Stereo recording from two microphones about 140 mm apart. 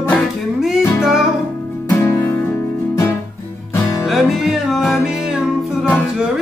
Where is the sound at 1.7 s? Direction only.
15° left (ahead or behind).